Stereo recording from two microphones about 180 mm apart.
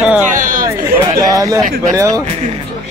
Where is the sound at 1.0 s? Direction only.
20° right (ahead or behind).